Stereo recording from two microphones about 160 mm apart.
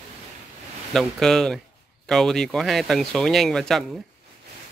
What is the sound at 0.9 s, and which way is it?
Speech, centre (ahead or behind).